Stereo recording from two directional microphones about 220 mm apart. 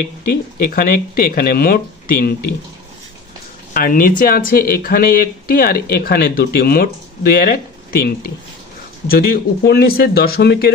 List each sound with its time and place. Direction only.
0.3 s speech: 45° left (ahead or behind)
3.7 s speech: 40° left (ahead or behind)